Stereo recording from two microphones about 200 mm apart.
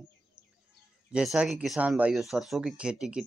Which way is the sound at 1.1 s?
5° right (ahead or behind).